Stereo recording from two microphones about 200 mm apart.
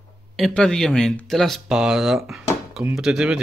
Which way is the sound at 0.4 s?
5° left (ahead or behind).